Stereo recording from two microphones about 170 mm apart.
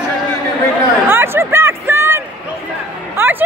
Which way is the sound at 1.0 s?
15° right (ahead or behind).